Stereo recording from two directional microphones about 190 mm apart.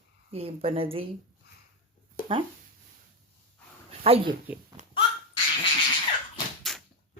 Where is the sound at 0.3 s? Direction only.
30° right (ahead or behind).